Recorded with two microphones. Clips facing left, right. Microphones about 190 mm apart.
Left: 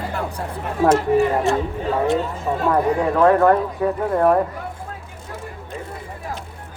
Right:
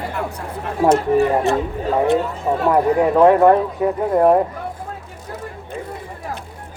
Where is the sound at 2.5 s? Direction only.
10° right (ahead or behind).